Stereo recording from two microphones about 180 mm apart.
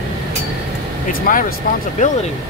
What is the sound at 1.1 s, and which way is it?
Speech, 50° left (ahead or behind).